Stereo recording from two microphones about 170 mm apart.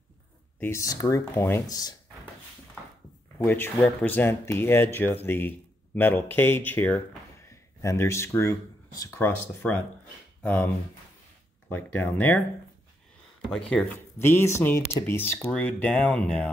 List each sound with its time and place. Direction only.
0.6 s speech: 15° left (ahead or behind)
3.4 s speech: 15° left (ahead or behind)
11.7 s speech: 10° left (ahead or behind)